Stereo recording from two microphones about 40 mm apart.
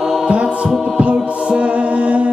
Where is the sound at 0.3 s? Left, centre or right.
Right.